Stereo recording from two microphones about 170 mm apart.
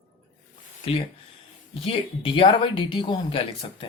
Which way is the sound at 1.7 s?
35° left (ahead or behind).